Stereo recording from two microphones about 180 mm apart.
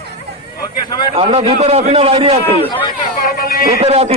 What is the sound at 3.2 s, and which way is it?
Music, 55° left (ahead or behind).